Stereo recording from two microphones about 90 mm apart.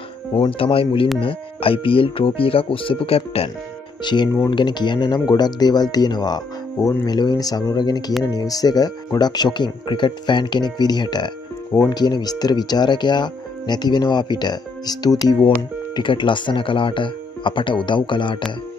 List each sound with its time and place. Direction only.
0.5 s speech: 90° left
4.0 s speech: 55° left (ahead or behind)
15.9 s speech: 65° left (ahead or behind)